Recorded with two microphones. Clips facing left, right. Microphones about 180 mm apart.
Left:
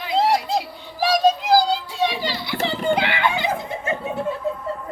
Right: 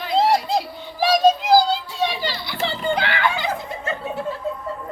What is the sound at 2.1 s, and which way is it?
Children playing, 15° left (ahead or behind).